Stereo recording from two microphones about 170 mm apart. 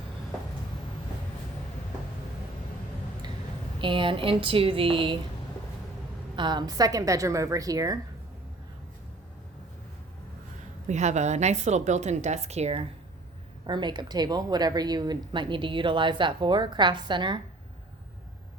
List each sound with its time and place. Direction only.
3.8 s speech: 30° right (ahead or behind)
6.3 s speech: 25° right (ahead or behind)
10.8 s a woman's voice: 45° right (ahead or behind)
13.7 s speech: 25° right (ahead or behind)